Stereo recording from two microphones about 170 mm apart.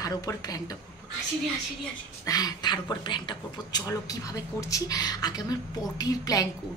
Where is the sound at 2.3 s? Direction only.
20° left (ahead or behind).